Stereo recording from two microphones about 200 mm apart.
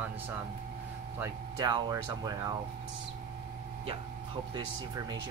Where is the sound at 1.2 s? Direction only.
20° right (ahead or behind).